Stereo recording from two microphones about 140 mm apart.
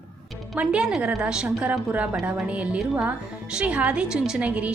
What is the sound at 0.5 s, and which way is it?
A woman's voice, 5° right (ahead or behind).